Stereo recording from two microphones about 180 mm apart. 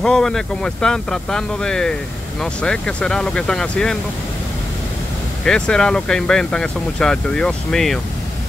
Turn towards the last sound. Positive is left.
turn(degrees=0)  # may be behind; listen again after turning